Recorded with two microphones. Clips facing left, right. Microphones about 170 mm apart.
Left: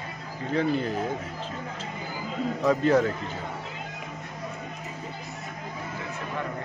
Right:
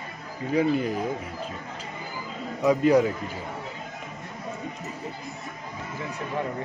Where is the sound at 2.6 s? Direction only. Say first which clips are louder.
Right 3 dB; 10° right (ahead or behind).